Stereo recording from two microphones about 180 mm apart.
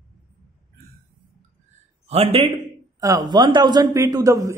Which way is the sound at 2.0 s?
35° right (ahead or behind).